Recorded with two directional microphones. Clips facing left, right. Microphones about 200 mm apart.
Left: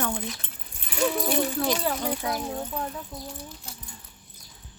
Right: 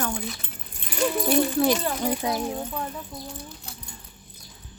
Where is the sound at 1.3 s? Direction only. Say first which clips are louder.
Right 4 dB; 10° right (ahead or behind).